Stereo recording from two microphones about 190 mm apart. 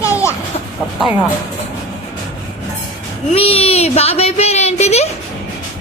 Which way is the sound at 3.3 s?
30° left (ahead or behind).